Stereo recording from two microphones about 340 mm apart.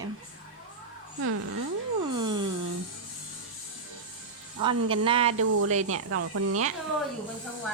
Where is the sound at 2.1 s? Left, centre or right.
Centre.